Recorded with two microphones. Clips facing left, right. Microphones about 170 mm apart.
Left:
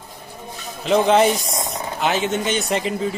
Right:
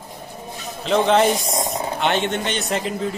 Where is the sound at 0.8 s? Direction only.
5° left (ahead or behind).